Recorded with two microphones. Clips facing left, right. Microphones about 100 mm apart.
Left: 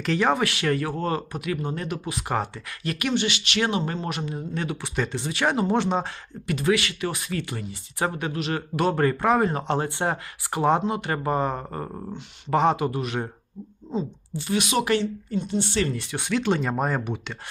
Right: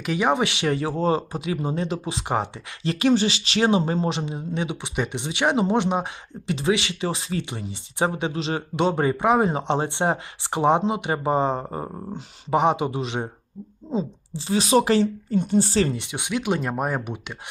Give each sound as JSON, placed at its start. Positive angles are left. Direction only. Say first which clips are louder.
{"t": 0.0, "sound": "a woman's voice", "louder": "right 1 dB", "side_deg": -15}
{"t": 15.9, "sound": "speech", "louder": "left 1 dB", "side_deg": -20}